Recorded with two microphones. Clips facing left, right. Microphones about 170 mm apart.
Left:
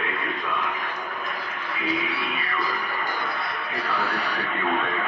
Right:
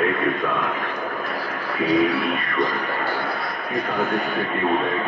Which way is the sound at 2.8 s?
40° right (ahead or behind).